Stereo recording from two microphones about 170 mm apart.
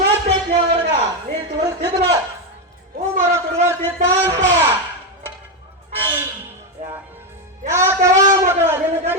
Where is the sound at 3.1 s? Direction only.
40° right (ahead or behind).